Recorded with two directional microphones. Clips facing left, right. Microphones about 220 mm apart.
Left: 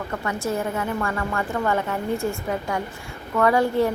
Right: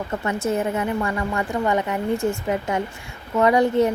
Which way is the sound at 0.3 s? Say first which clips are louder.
Right 3 dB; 20° right (ahead or behind).